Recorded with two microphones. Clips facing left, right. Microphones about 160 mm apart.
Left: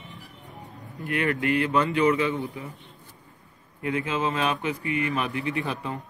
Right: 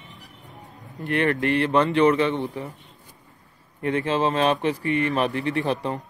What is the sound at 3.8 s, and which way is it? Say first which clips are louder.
Speech: right 4 dB; 35° right (ahead or behind).